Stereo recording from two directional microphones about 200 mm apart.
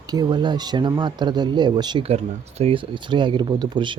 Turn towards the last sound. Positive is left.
turn(degrees=-25)  # may be behind; listen again after turning